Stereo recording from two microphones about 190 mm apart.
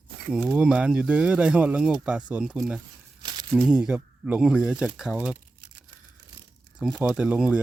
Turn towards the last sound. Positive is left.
turn(degrees=-5)  # may be behind; listen again after turning